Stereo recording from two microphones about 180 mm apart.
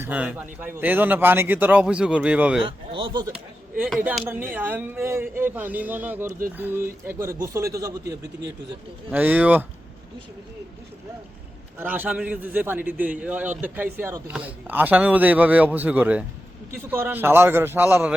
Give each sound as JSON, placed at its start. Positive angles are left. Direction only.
{"t": 0.0, "sound": "a man's voice", "side_deg": -10}
{"t": 2.9, "sound": "a man's voice", "side_deg": -25}
{"t": 3.8, "sound": "a man's voice", "side_deg": 0}
{"t": 9.0, "sound": "a man's voice", "side_deg": -10}
{"t": 11.8, "sound": "a man's voice", "side_deg": -10}